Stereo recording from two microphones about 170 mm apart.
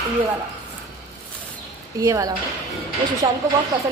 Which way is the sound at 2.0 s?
20° right (ahead or behind).